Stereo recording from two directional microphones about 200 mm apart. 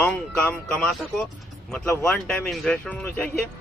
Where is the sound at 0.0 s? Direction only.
5° left (ahead or behind).